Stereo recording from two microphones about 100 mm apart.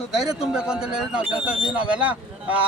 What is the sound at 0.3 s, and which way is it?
A man's voice, 10° right (ahead or behind).